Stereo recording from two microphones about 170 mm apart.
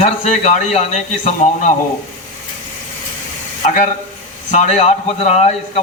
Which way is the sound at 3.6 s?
40° left (ahead or behind).